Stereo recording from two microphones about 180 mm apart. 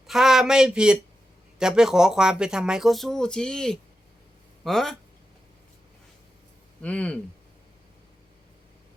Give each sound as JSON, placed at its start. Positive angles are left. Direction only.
{"t": 0.1, "sound": "speech", "side_deg": 0}
{"t": 6.8, "sound": "speech", "side_deg": 5}